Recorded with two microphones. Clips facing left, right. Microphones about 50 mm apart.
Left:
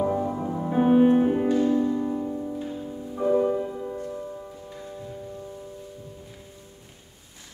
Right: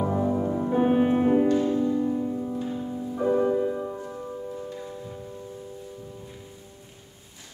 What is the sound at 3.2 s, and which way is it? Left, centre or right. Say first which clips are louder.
Music: left 1 dB; centre.